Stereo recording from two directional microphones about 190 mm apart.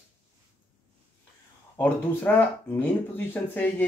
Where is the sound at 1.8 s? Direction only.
10° left (ahead or behind).